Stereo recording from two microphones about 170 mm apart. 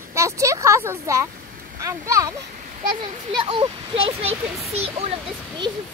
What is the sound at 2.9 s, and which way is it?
A child's voice, 30° right (ahead or behind).